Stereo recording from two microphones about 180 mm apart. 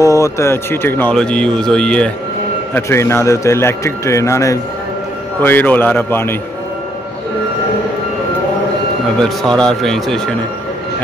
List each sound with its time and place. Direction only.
0.0 s speech: 15° left (ahead or behind)
9.2 s speech: 5° left (ahead or behind)